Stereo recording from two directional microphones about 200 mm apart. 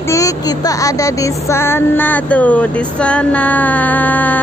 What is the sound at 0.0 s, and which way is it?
Speech, 15° left (ahead or behind).